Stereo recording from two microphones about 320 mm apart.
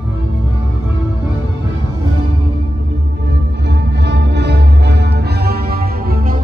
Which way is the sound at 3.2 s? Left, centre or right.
Right.